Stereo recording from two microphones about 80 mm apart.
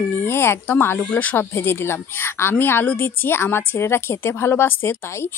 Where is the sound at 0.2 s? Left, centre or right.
Left.